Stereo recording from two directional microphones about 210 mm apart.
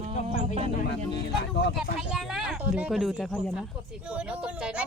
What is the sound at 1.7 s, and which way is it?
Speech, centre (ahead or behind).